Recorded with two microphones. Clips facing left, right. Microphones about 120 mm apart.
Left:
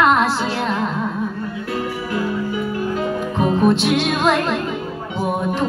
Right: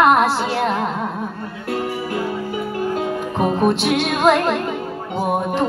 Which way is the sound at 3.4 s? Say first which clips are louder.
Left 1 dB; 55° right (ahead or behind).